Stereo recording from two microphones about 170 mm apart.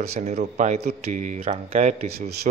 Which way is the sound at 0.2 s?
45° right (ahead or behind).